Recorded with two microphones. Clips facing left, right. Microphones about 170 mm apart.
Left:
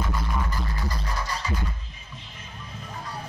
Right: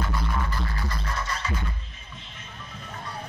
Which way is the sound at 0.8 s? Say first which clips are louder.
Left 1 dB; 35° left (ahead or behind).